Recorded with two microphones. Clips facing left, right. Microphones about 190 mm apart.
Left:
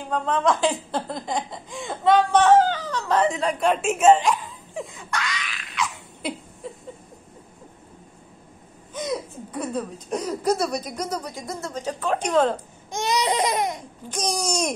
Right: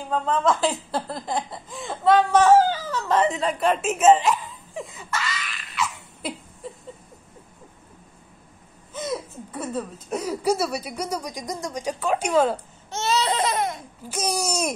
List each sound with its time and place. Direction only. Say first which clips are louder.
0.1 s speech: even; 5° right (ahead or behind)
6.6 s a sound: left 1 dB; centre (ahead or behind)
8.9 s speech: left 1 dB; centre (ahead or behind)
12.9 s laughter: left 1 dB; 15° left (ahead or behind)
14.0 s speech: even; 5° right (ahead or behind)